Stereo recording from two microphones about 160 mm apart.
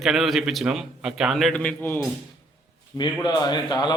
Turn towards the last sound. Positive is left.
turn(degrees=25)  # may be behind; listen again after turning